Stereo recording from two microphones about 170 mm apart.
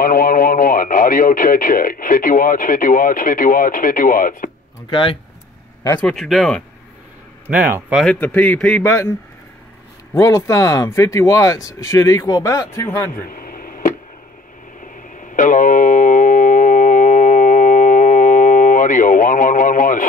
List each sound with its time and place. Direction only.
0.0 s speech: 55° left (ahead or behind)
4.8 s speech: 30° left (ahead or behind)
6.0 s speech: centre (ahead or behind)
7.4 s speech: 10° right (ahead or behind)
8.0 s a man's voice: 5° left (ahead or behind)
8.8 s a man's voice: 15° left (ahead or behind)
10.1 s speech: 20° left (ahead or behind)
13.1 s a sound: 60° left (ahead or behind)